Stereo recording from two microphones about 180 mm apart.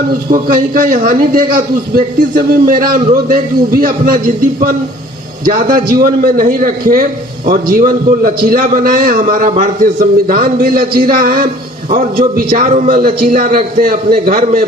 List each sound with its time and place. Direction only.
0.3 s a man's voice: 50° right (ahead or behind)
5.5 s a man's voice: 50° right (ahead or behind)